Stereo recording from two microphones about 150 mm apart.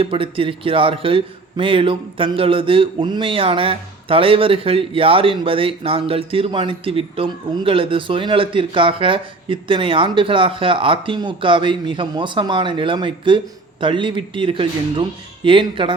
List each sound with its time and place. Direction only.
0.0 s a man's voice: 35° right (ahead or behind)